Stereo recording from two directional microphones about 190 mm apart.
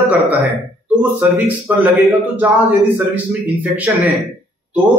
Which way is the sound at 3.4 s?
10° right (ahead or behind).